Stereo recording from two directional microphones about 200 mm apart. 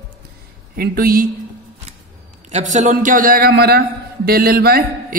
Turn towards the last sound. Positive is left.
turn(degrees=-50)  # may be behind; listen again after turning